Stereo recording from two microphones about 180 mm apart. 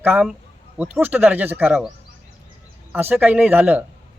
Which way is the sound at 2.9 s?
10° right (ahead or behind).